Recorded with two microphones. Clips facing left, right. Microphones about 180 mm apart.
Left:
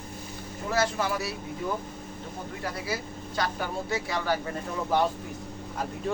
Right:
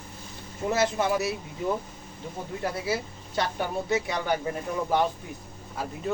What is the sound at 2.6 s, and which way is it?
A man's voice, 25° right (ahead or behind).